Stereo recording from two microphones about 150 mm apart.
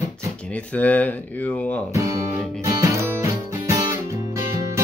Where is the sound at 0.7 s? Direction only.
10° left (ahead or behind).